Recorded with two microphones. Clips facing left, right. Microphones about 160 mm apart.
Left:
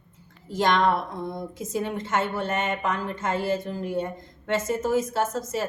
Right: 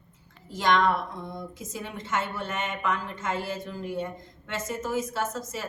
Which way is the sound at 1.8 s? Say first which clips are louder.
Left 3 dB; 50° left (ahead or behind).